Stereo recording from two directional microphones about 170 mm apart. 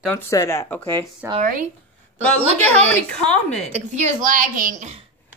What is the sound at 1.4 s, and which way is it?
Speech, 50° right (ahead or behind).